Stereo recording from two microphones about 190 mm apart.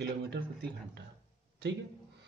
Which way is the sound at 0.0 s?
65° right (ahead or behind).